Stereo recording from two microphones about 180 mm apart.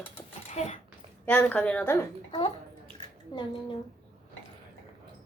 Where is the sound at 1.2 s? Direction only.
10° left (ahead or behind).